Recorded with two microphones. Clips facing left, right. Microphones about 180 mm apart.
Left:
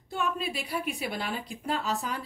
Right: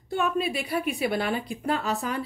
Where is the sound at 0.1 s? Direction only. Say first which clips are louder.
Right 5 dB; 60° right (ahead or behind).